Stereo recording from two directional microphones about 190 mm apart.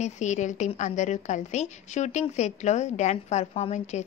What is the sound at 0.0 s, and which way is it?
A woman's voice, 40° left (ahead or behind).